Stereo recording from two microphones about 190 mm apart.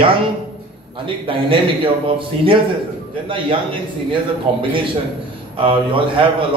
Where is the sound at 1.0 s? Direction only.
25° right (ahead or behind).